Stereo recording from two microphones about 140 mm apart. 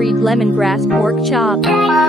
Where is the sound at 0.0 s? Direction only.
Centre (ahead or behind).